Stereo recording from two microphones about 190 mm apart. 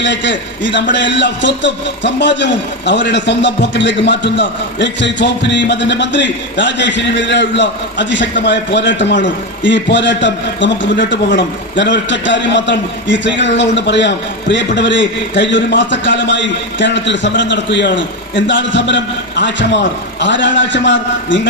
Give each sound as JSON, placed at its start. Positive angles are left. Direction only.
{"t": 0.0, "sound": "a man's voice", "side_deg": 70}